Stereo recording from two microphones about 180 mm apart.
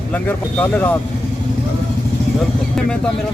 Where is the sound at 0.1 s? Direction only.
10° left (ahead or behind).